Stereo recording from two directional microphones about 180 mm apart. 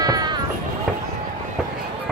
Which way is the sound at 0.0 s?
20° right (ahead or behind).